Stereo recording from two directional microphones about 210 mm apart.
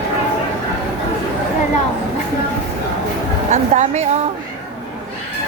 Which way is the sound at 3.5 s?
35° right (ahead or behind).